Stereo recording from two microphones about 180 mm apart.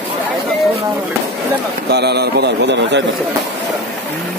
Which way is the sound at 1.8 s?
65° right (ahead or behind).